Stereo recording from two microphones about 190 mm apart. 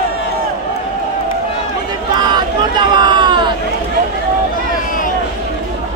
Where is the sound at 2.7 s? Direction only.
25° right (ahead or behind).